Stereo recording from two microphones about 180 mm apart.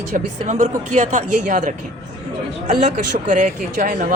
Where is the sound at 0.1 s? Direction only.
40° right (ahead or behind).